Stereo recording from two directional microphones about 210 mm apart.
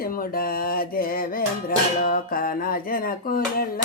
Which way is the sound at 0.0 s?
45° left (ahead or behind).